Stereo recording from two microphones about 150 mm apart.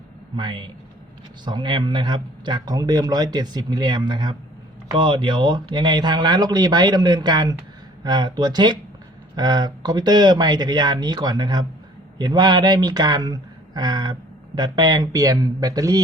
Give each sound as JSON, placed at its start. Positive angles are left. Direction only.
{"t": 0.3, "sound": "a man's voice", "side_deg": -30}